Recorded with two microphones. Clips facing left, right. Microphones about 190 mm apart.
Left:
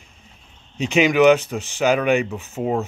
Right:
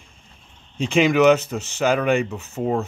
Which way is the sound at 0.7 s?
Centre (ahead or behind).